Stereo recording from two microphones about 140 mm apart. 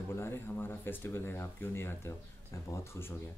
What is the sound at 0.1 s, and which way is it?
Speech, 15° left (ahead or behind).